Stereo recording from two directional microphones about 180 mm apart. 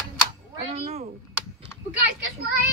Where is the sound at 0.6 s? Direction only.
35° right (ahead or behind).